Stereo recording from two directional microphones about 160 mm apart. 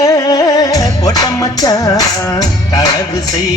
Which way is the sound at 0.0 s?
25° left (ahead or behind).